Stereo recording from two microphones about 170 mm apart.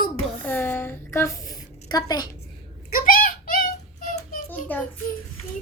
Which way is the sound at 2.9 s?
55° left (ahead or behind).